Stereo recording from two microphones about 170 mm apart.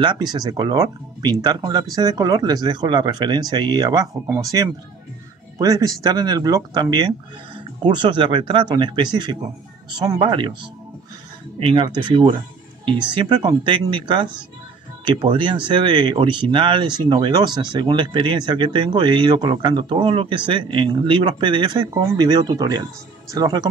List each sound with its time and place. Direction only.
0.0 s speech: 25° right (ahead or behind)
11.7 s speech: 30° right (ahead or behind)